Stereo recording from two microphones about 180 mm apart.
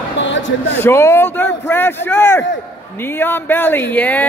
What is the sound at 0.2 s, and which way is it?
Basketball bounce, 90° left.